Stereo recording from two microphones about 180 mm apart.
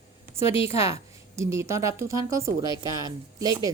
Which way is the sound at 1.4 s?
15° right (ahead or behind).